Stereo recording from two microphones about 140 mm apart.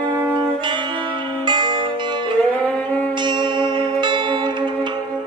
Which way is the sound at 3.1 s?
35° right (ahead or behind).